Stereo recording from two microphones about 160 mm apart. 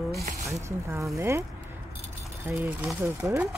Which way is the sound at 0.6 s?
20° right (ahead or behind).